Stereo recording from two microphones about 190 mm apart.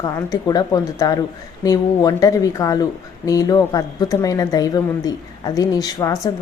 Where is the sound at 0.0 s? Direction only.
20° left (ahead or behind).